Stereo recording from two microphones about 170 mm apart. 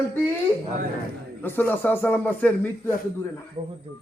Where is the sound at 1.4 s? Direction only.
10° left (ahead or behind).